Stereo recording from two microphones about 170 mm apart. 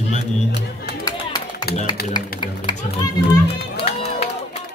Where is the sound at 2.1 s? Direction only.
25° left (ahead or behind).